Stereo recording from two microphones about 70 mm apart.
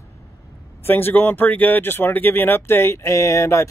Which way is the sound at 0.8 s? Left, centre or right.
Left.